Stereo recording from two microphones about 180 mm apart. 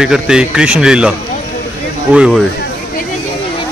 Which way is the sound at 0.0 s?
5° right (ahead or behind).